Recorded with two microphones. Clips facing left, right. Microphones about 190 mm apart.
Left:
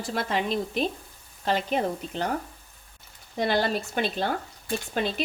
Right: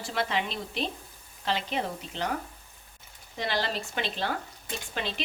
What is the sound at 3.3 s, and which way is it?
Speech, 50° left (ahead or behind).